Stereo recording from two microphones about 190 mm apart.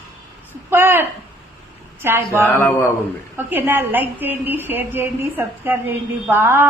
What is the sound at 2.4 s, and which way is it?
Speech, 10° left (ahead or behind).